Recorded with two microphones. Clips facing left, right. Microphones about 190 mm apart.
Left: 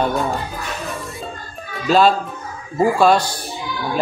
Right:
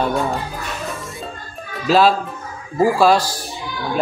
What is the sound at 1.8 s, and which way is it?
A man's voice, centre (ahead or behind).